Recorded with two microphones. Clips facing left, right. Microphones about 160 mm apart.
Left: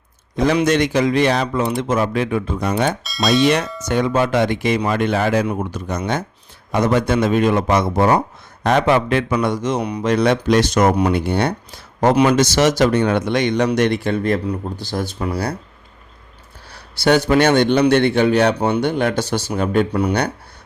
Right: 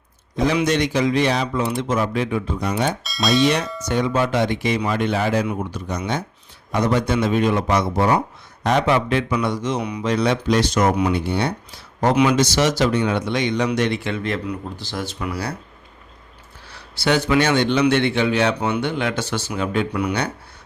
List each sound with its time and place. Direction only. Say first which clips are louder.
0.4 s a man's voice: left 3 dB; 50° left (ahead or behind)
3.0 s speech: left 1 dB; centre (ahead or behind)
3.8 s a man's voice: left 3 dB; 50° left (ahead or behind)
10.9 s a man's voice: left 3 dB; 50° left (ahead or behind)
16.6 s a man's voice: left 5 dB; 40° left (ahead or behind)